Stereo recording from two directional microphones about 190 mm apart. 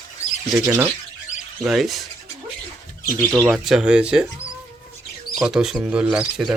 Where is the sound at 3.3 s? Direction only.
Centre (ahead or behind).